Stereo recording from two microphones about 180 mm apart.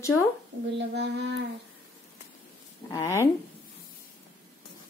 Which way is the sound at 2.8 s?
15° left (ahead or behind).